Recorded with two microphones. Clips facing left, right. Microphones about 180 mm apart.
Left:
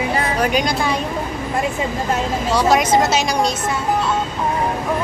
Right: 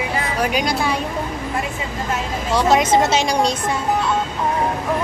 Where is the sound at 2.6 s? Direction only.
25° right (ahead or behind).